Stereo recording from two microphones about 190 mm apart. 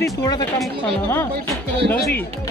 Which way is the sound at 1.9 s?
10° left (ahead or behind).